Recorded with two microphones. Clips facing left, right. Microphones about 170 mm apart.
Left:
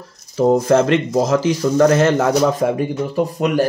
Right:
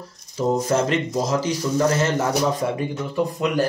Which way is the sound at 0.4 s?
55° left (ahead or behind).